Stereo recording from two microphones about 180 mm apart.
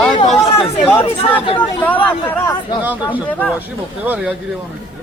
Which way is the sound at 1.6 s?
10° left (ahead or behind).